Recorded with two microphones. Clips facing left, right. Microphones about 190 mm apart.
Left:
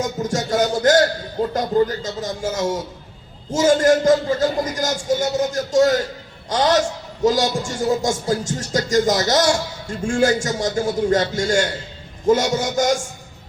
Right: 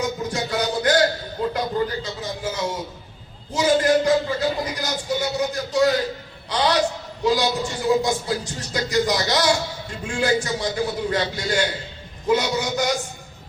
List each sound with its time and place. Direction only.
0.0 s music: 45° left (ahead or behind)
1.4 s a sound: 45° left (ahead or behind)
3.5 s speech: 45° left (ahead or behind)